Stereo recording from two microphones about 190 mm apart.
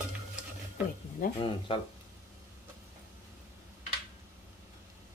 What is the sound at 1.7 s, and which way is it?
Speech, 25° left (ahead or behind).